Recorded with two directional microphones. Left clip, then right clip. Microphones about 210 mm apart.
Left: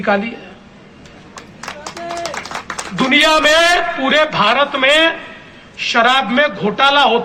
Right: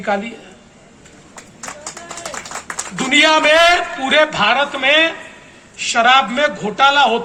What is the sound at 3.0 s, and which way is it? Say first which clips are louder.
A man's voice: even; 15° right (ahead or behind).